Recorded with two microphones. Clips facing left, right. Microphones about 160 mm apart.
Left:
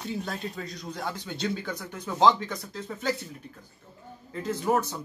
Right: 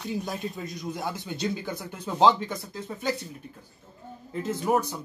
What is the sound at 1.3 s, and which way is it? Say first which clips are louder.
Speech: even; 10° right (ahead or behind).